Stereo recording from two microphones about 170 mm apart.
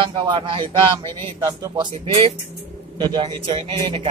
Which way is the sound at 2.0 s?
30° right (ahead or behind).